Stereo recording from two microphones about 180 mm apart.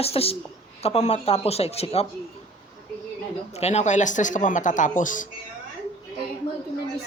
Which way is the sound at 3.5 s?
40° left (ahead or behind).